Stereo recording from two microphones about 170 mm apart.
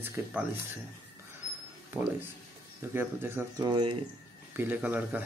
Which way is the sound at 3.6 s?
25° right (ahead or behind).